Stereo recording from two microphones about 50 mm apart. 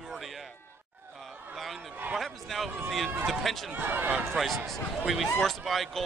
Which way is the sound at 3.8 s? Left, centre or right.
Right.